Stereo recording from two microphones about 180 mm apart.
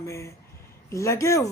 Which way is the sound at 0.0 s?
15° left (ahead or behind).